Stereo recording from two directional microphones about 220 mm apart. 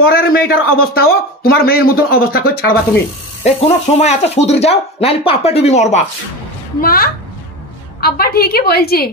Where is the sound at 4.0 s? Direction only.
30° left (ahead or behind).